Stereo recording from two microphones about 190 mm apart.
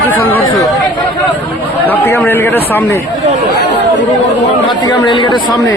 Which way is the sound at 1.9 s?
10° left (ahead or behind).